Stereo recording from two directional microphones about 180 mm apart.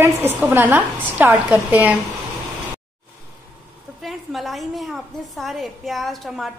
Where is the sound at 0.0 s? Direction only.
15° right (ahead or behind).